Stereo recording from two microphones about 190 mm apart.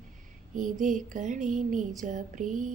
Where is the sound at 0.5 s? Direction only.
40° right (ahead or behind).